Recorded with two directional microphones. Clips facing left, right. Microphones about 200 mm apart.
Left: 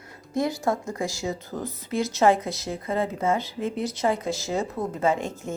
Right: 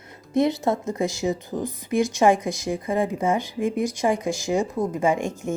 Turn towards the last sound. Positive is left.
turn(degrees=-15)  # may be behind; listen again after turning